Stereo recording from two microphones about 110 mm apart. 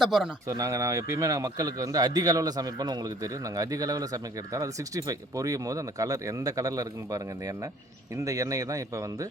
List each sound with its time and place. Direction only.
0.0 s a man's voice: 5° right (ahead or behind)
0.4 s a man's voice: 30° right (ahead or behind)